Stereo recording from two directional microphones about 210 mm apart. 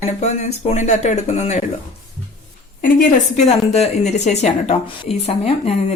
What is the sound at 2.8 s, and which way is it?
A woman's voice, 40° left (ahead or behind).